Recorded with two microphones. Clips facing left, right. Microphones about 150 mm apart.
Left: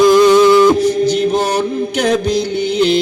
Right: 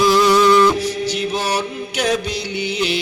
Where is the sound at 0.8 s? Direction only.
50° left (ahead or behind).